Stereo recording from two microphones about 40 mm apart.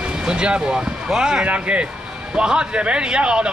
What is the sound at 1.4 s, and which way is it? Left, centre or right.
Speech, right.